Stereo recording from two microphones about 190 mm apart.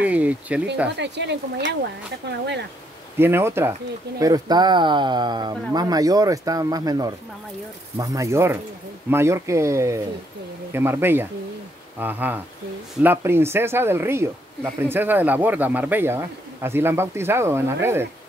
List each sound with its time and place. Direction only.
0.0 s speech: 10° right (ahead or behind)
0.9 s speech: 65° right (ahead or behind)
3.2 s speech: 10° right (ahead or behind)